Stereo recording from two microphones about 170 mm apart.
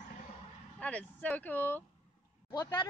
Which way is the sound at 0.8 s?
10° left (ahead or behind).